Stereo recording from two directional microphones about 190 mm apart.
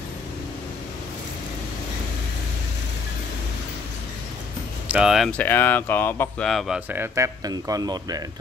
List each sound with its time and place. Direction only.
4.8 s speech: 5° right (ahead or behind)
5.4 s speech: 10° left (ahead or behind)
6.9 s speech: 15° right (ahead or behind)